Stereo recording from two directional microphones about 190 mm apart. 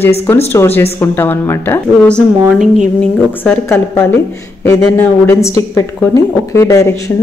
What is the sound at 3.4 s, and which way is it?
A woman's voice, 10° left (ahead or behind).